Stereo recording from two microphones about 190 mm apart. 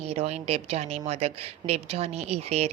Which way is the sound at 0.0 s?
35° right (ahead or behind).